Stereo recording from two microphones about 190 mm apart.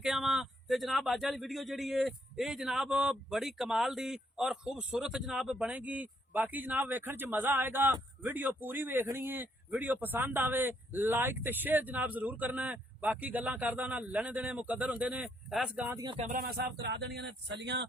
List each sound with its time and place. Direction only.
0.0 s speech: 5° right (ahead or behind)
16.0 s music: 25° right (ahead or behind)
16.3 s speech: 50° right (ahead or behind)